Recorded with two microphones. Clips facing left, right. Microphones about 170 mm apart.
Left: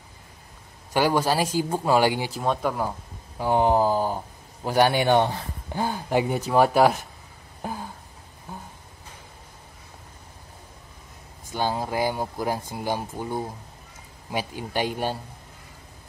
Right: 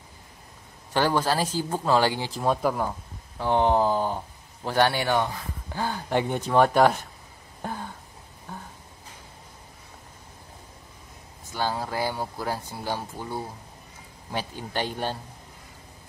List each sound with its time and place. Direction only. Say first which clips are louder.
0.9 s speech: left 2 dB; 10° left (ahead or behind)
2.4 s speech: right 2 dB; 5° right (ahead or behind); by 5.8 s 25° left (ahead or behind)
5.8 s speech: left 2 dB; 15° left (ahead or behind)
7.6 s a sound: left 1 dB; 5° left (ahead or behind)
11.5 s speech: left 2 dB; 20° left (ahead or behind)